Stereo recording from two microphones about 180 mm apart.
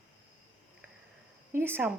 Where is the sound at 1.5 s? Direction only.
10° right (ahead or behind).